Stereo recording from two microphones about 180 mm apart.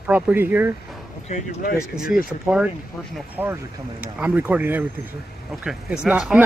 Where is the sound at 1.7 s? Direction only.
5° right (ahead or behind).